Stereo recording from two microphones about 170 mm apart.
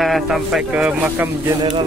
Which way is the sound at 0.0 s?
Centre (ahead or behind).